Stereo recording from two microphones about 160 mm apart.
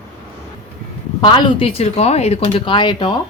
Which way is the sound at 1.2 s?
30° left (ahead or behind).